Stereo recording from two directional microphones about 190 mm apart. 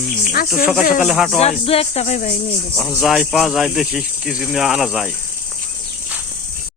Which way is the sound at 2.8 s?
Centre (ahead or behind).